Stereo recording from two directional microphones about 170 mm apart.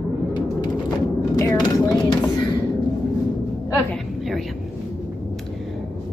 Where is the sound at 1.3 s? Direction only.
20° left (ahead or behind).